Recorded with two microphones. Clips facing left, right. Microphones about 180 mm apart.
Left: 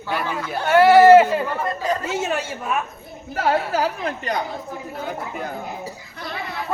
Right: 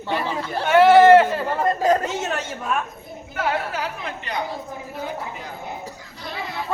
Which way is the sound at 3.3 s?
40° left (ahead or behind).